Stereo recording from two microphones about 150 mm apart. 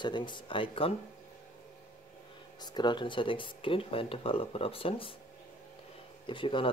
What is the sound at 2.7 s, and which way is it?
Speech, 30° left (ahead or behind).